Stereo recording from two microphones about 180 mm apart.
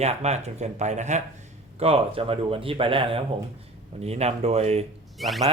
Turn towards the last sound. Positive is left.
turn(degrees=0)  # may be behind; listen again after turning